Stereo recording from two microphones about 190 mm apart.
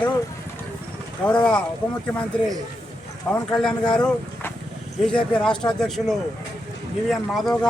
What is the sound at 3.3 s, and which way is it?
Speech, 5° left (ahead or behind).